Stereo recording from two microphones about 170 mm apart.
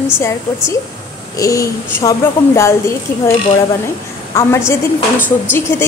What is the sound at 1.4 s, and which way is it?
A woman's voice, 20° left (ahead or behind).